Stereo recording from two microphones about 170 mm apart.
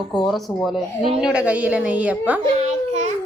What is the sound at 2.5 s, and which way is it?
Babbling, 40° right (ahead or behind).